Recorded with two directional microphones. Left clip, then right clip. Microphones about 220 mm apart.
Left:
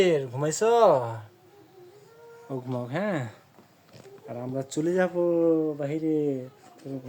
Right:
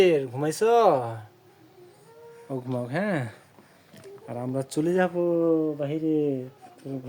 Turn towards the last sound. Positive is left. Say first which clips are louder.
# right 1 dB
turn(degrees=-15)  # may be behind; listen again after turning